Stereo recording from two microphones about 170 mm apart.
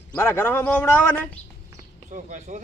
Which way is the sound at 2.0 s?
45° right (ahead or behind).